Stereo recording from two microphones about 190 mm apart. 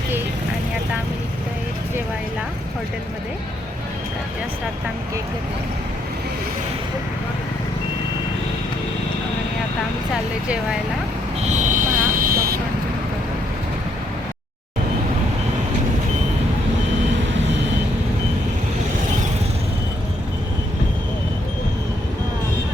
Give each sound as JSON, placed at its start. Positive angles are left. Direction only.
{"t": 11.4, "sound": "vehicle", "side_deg": -45}